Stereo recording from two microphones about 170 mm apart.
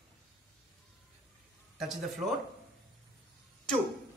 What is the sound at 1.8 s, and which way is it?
Speech, centre (ahead or behind).